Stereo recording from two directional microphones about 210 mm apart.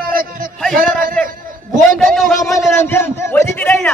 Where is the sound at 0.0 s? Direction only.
45° right (ahead or behind).